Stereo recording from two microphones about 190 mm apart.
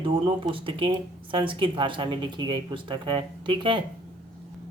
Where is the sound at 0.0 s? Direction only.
25° right (ahead or behind).